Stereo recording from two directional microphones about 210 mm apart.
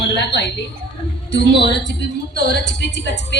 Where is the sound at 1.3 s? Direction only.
55° left (ahead or behind).